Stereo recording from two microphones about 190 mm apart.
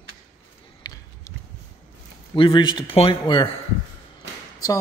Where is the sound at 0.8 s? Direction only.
20° left (ahead or behind).